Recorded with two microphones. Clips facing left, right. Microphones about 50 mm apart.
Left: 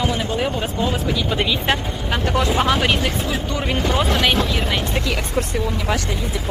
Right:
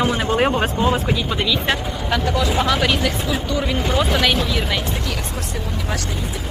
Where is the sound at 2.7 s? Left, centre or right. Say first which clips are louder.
Even; centre.